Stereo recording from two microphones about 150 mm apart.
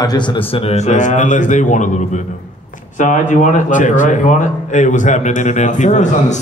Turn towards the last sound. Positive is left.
turn(degrees=50)  # may be behind; listen again after turning